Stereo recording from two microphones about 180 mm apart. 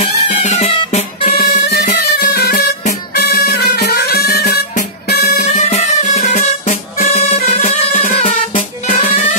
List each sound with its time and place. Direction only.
0.0 s music: 35° left (ahead or behind)
1.3 s music: 60° left (ahead or behind)
5.2 s music: 40° left (ahead or behind)